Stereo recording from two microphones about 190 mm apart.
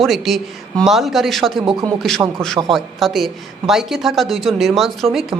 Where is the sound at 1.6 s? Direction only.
20° right (ahead or behind).